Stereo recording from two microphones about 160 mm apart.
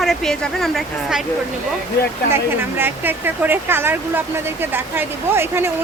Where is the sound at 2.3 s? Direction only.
15° right (ahead or behind).